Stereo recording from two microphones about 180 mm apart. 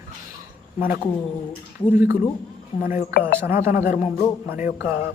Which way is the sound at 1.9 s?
10° right (ahead or behind).